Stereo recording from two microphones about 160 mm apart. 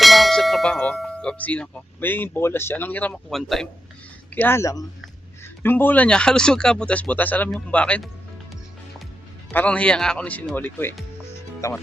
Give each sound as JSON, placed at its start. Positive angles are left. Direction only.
{"t": 0.0, "sound": "speech", "side_deg": 0}
{"t": 4.4, "sound": "speech", "side_deg": 15}
{"t": 9.5, "sound": "speech", "side_deg": 10}